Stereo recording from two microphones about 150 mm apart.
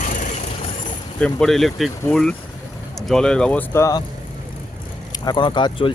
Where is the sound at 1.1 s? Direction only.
5° left (ahead or behind); by 4.0 s 20° left (ahead or behind).